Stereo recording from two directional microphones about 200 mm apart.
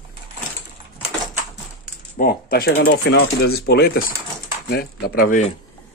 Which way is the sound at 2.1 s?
45° left (ahead or behind).